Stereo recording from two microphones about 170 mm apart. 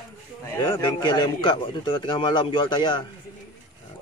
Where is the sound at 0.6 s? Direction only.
30° left (ahead or behind).